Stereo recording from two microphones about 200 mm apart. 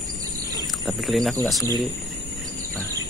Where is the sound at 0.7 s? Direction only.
Centre (ahead or behind).